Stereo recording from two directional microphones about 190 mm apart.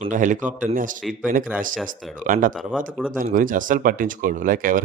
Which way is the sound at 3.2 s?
45° right (ahead or behind).